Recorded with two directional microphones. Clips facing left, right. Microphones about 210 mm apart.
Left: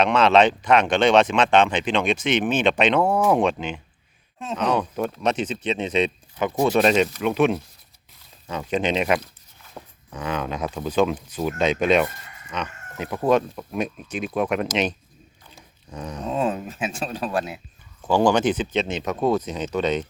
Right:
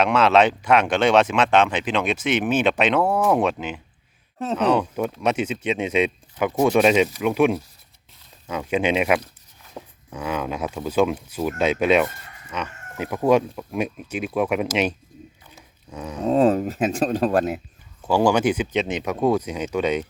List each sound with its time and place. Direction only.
0.0 s speech: 5° right (ahead or behind)
15.5 s dog: 5° right (ahead or behind)
16.2 s speech: 35° right (ahead or behind)
18.1 s speech: 10° right (ahead or behind)